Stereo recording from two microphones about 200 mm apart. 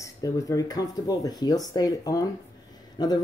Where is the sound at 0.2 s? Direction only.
15° left (ahead or behind).